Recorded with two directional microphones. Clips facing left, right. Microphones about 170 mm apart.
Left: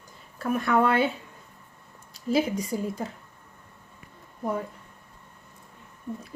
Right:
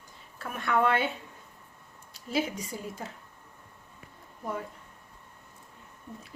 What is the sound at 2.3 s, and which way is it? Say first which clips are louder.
Speech: left 6 dB; 40° left (ahead or behind).